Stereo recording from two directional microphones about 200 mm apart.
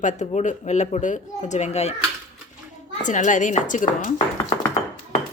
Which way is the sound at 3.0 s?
40° left (ahead or behind).